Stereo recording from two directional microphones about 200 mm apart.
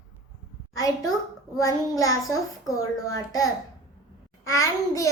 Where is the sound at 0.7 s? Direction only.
20° left (ahead or behind).